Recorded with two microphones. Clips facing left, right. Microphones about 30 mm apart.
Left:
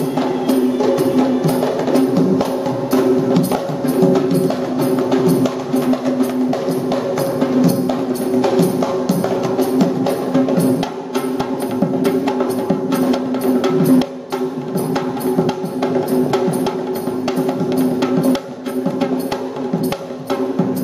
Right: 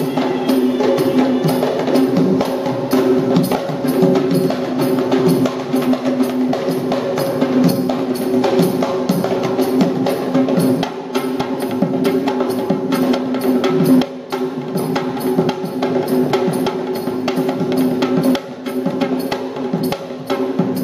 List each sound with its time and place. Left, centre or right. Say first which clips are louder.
0.2 s music: even; centre
12.0 s music: right 1 dB; centre
15.3 s music: even; centre
18.0 s music: even; centre